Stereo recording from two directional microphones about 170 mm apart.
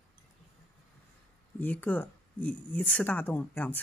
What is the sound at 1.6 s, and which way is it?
Speech, 10° left (ahead or behind).